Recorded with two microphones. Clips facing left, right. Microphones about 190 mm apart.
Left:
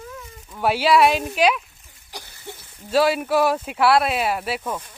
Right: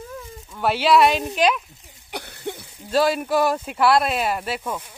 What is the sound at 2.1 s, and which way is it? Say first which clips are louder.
Cough: right 7 dB; 65° right (ahead or behind).